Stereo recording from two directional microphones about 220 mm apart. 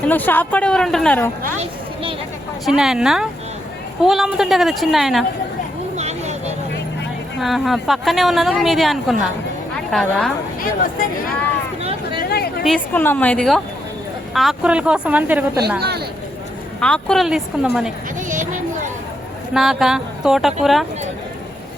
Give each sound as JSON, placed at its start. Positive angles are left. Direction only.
{"t": 0.0, "sound": "a woman's voice", "side_deg": 10}
{"t": 2.6, "sound": "speech", "side_deg": 0}
{"t": 6.0, "sound": "a sound", "side_deg": -30}
{"t": 7.3, "sound": "speech", "side_deg": 0}
{"t": 10.8, "sound": "speech", "side_deg": 40}
{"t": 11.8, "sound": "a sound", "side_deg": -25}
{"t": 12.2, "sound": "chatter", "side_deg": 45}
{"t": 12.6, "sound": "speech", "side_deg": 5}
{"t": 15.8, "sound": "speech", "side_deg": -45}
{"t": 16.8, "sound": "speech", "side_deg": 5}
{"t": 18.3, "sound": "speech", "side_deg": -35}
{"t": 19.5, "sound": "speech", "side_deg": 0}